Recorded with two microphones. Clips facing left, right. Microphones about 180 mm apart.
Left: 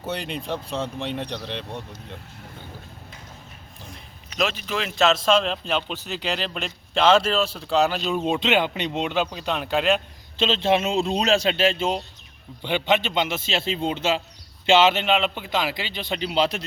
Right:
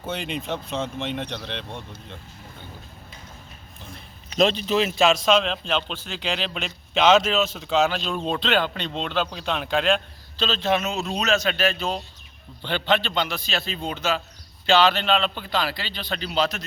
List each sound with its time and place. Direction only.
0.3 s speech: centre (ahead or behind)
4.6 s speech: 20° right (ahead or behind)
5.2 s speech: centre (ahead or behind)
10.3 s a man's voice: 25° left (ahead or behind)